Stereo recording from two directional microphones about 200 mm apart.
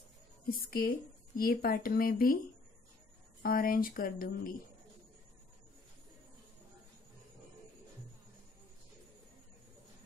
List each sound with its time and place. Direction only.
0.5 s a woman's voice: 45° left (ahead or behind)
3.4 s a woman's voice: 45° left (ahead or behind)